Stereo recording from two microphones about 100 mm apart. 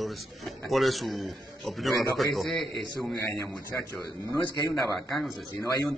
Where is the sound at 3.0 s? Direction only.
25° left (ahead or behind).